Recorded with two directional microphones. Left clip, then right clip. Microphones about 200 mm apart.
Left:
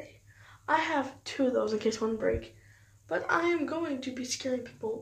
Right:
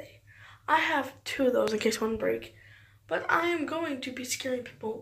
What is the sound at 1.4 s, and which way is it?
Speech, 15° right (ahead or behind).